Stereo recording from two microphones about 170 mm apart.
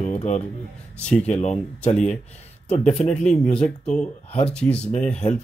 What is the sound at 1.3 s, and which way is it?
Speech, 45° left (ahead or behind).